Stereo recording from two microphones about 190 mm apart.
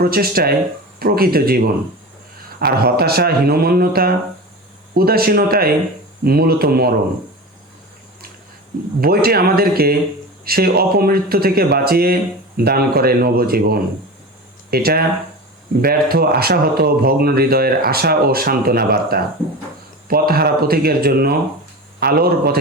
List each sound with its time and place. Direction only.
0.0 s speech: 50° right (ahead or behind)
9.0 s speech: 55° right (ahead or behind)